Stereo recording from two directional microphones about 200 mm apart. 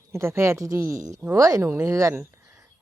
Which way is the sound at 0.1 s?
15° right (ahead or behind).